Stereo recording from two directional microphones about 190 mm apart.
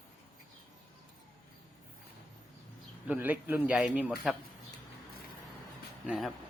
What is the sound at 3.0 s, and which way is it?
Speech, 10° right (ahead or behind).